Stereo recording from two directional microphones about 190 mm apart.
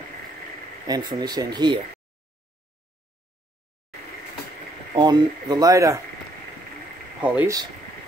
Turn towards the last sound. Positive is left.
turn(degrees=-10)  # may be behind; listen again after turning